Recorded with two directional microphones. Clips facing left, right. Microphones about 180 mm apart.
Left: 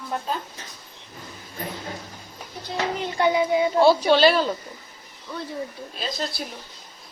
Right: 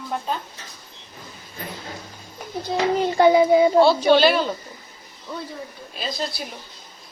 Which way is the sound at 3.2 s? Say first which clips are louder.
Right 6 dB; 35° right (ahead or behind).